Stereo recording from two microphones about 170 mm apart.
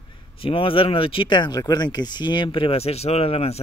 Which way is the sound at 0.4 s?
30° left (ahead or behind).